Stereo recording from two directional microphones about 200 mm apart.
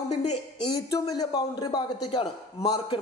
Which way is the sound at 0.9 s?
20° left (ahead or behind).